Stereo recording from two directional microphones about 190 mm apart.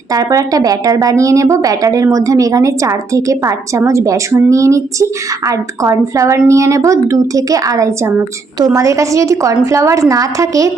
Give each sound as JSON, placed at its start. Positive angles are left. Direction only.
{"t": 0.1, "sound": "a woman's voice", "side_deg": -20}